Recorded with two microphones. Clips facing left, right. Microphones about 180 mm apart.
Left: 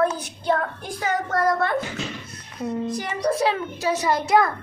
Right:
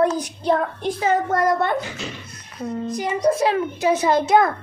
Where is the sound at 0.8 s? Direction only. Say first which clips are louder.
Right 6 dB; 25° right (ahead or behind).